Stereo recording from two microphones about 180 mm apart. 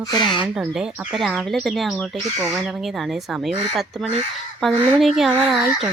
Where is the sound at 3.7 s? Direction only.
35° right (ahead or behind).